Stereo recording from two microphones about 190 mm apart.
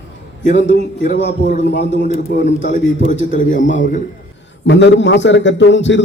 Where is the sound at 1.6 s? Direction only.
65° left (ahead or behind).